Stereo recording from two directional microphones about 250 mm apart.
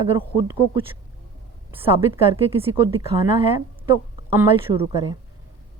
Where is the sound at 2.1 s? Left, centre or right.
Right.